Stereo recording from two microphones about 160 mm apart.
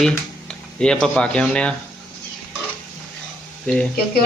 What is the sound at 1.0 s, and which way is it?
Speech, 5° left (ahead or behind).